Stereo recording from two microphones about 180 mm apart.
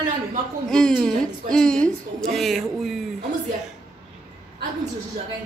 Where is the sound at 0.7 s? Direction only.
5° left (ahead or behind).